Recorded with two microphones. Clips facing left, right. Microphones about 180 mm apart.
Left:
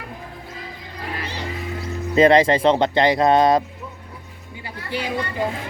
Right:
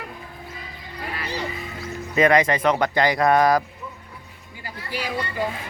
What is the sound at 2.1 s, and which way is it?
Speech, 30° left (ahead or behind).